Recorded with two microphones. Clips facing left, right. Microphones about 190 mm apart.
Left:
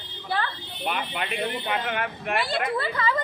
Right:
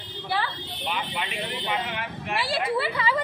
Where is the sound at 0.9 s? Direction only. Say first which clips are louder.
Left 2 dB; 55° left (ahead or behind).